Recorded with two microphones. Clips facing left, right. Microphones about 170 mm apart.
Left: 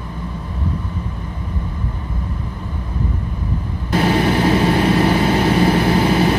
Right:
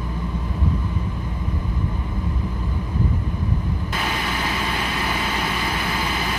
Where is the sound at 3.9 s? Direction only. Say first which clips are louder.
Left 14 dB; 40° left (ahead or behind).